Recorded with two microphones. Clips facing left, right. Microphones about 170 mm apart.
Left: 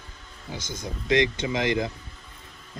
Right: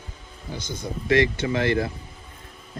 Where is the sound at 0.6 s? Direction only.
55° right (ahead or behind).